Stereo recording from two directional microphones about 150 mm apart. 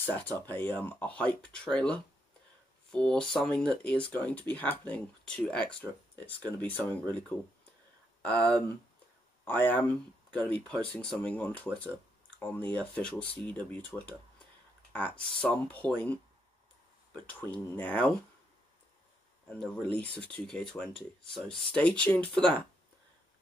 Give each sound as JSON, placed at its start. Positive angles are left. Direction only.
{"t": 0.3, "sound": "speech", "side_deg": 10}
{"t": 19.5, "sound": "speech", "side_deg": 5}